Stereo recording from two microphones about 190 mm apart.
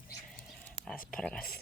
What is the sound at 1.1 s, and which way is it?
Speech, 5° left (ahead or behind).